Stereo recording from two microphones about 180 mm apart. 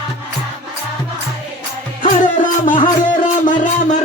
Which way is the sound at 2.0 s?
45° left (ahead or behind).